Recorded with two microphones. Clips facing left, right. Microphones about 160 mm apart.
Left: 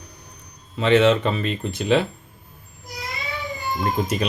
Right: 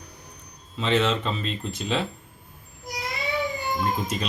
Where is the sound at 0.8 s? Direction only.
65° left (ahead or behind).